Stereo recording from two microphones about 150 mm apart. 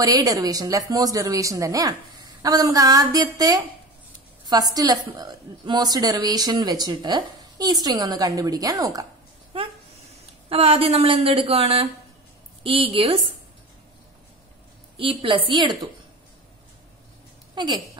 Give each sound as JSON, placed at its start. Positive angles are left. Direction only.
{"t": 0.0, "sound": "a woman's voice", "side_deg": -25}
{"t": 10.5, "sound": "a woman's voice", "side_deg": -40}
{"t": 15.0, "sound": "a woman's voice", "side_deg": -35}
{"t": 17.6, "sound": "speech", "side_deg": -30}